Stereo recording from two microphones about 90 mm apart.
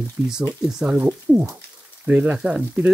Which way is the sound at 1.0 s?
25° right (ahead or behind).